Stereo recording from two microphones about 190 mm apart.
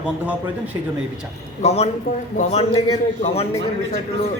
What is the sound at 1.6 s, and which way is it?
A man's voice, 35° left (ahead or behind).